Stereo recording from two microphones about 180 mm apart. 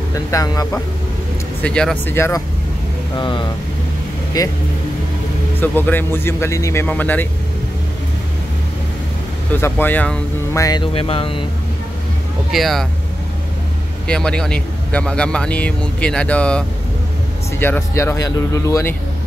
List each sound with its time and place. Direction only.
0.1 s speech: 20° left (ahead or behind)
1.6 s speech: 5° left (ahead or behind)
3.2 s speech: 25° left (ahead or behind)
5.6 s speech: 10° left (ahead or behind)
9.5 s speech: 10° left (ahead or behind)
10.6 s speech: 25° left (ahead or behind)
12.4 s speech: centre (ahead or behind)
14.0 s speech: 5° left (ahead or behind)